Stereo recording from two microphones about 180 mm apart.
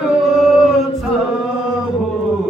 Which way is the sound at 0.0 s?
Centre (ahead or behind).